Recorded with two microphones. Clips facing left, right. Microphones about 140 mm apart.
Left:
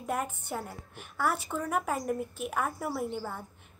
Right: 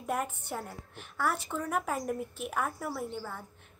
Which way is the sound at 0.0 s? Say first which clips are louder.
Even; centre (ahead or behind).